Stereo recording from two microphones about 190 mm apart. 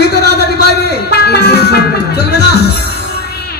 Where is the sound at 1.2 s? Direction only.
60° left (ahead or behind).